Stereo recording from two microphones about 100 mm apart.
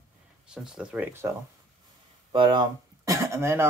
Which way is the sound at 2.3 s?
55° right (ahead or behind).